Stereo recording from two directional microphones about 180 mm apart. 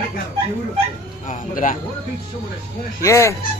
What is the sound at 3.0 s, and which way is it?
Fowl, 15° left (ahead or behind).